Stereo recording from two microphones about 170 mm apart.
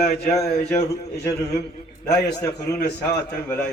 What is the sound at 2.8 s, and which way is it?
Speech, 75° left (ahead or behind).